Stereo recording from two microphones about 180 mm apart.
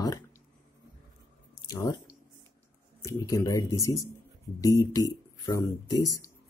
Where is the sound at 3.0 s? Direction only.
15° left (ahead or behind).